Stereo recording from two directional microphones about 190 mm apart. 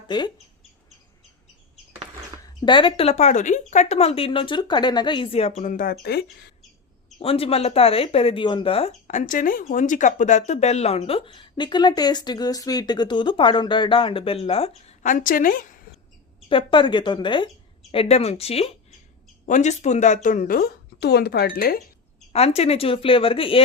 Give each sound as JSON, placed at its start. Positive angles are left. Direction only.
{"t": 0.1, "sound": "speech", "side_deg": 25}
{"t": 2.6, "sound": "speech", "side_deg": 25}
{"t": 7.2, "sound": "speech", "side_deg": 30}
{"t": 16.5, "sound": "speech", "side_deg": 25}
{"t": 22.3, "sound": "speech", "side_deg": 35}